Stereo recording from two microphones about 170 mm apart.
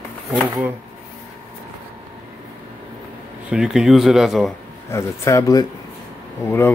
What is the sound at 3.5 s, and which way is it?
Speech, 5° right (ahead or behind).